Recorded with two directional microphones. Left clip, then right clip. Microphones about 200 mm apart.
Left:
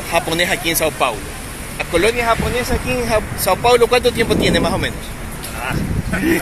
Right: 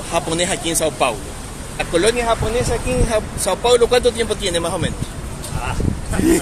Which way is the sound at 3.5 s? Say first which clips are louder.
Left 2 dB; 10° left (ahead or behind).